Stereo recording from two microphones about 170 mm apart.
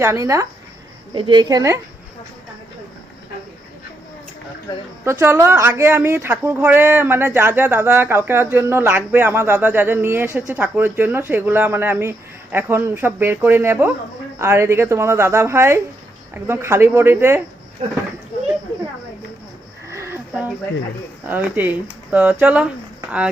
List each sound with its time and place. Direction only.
0.0 s a woman's voice: 15° right (ahead or behind)
5.0 s speech: 15° right (ahead or behind)
19.9 s a sound: 15° right (ahead or behind)
21.2 s speech: 10° right (ahead or behind)